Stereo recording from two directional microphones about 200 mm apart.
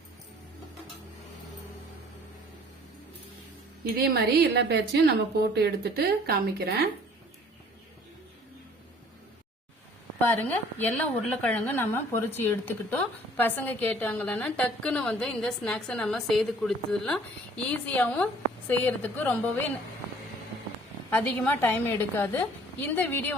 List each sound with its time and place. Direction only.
4.0 s a woman's voice: 55° right (ahead or behind)
10.2 s a woman's voice: 10° left (ahead or behind)
21.1 s a woman's voice: 10° left (ahead or behind)